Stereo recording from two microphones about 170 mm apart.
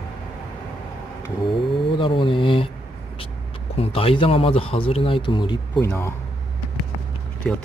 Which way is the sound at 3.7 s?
35° left (ahead or behind).